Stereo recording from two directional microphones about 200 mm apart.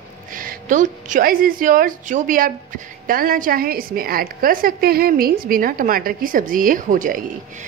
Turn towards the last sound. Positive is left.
turn(degrees=-40)  # may be behind; listen again after turning